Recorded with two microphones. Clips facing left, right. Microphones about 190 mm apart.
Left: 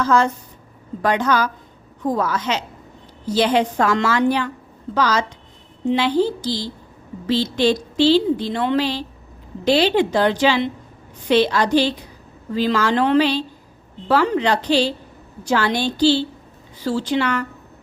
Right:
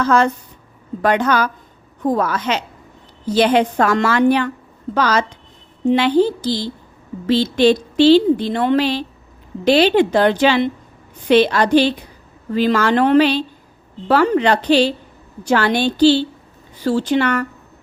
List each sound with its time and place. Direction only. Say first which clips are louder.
0.0 s a woman's voice: right 2 dB; 65° right (ahead or behind)